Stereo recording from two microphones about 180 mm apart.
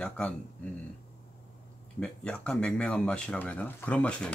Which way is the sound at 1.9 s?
5° left (ahead or behind).